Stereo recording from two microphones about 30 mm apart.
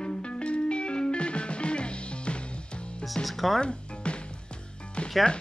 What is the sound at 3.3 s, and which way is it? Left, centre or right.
Speech, centre.